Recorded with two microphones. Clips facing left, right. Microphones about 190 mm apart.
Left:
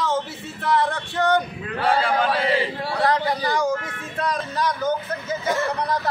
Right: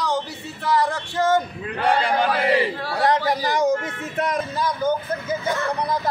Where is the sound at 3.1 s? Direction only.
25° right (ahead or behind).